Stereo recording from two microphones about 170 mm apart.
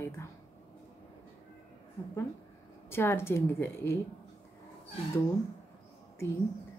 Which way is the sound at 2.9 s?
15° left (ahead or behind).